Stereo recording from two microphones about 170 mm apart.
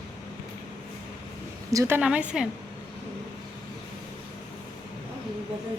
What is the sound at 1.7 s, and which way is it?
Speech, 20° right (ahead or behind).